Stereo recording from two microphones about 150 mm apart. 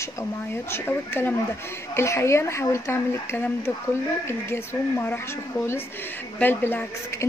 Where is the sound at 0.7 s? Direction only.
15° left (ahead or behind).